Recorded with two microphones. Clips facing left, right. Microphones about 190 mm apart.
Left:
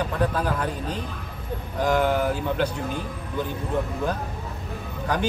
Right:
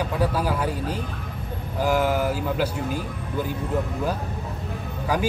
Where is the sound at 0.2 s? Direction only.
10° right (ahead or behind).